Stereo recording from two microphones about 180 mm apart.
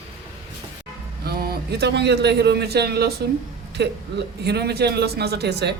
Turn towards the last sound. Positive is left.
turn(degrees=-65)  # may be behind; listen again after turning